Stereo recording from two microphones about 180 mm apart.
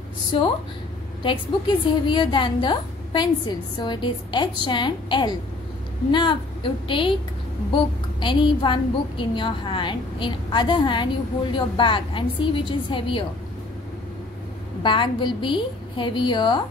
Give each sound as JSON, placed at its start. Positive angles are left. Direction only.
{"t": 0.3, "sound": "a woman's voice", "side_deg": 30}
{"t": 14.8, "sound": "a woman's voice", "side_deg": 25}